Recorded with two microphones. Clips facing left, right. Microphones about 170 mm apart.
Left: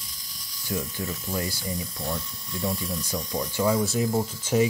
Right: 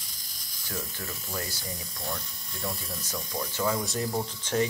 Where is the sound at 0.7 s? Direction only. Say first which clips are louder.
Left 7 dB; 15° left (ahead or behind).